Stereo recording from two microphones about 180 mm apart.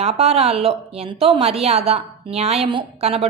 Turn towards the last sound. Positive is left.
turn(degrees=-35)  # may be behind; listen again after turning